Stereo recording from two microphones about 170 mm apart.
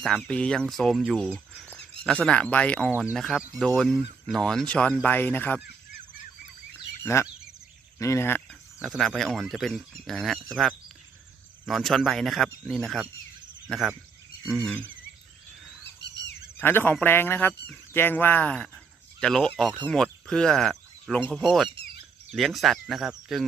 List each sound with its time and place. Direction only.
0.0 s speech: 5° left (ahead or behind)
7.0 s speech: 15° left (ahead or behind)
8.8 s speech: centre (ahead or behind)
14.6 s speech: 10° left (ahead or behind)
16.0 s a sound: 90° left
16.6 s speech: 10° left (ahead or behind)
21.7 s a sound: 75° left (ahead or behind)
22.3 s speech: centre (ahead or behind)